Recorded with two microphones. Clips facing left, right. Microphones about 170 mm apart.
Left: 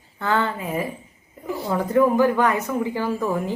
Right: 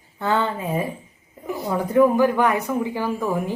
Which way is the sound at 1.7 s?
15° right (ahead or behind).